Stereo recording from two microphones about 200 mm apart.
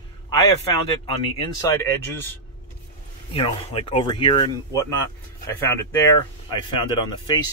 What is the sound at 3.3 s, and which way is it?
Speech, 30° left (ahead or behind).